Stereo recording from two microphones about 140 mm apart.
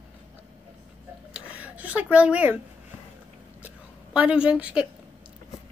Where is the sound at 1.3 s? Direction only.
10° right (ahead or behind).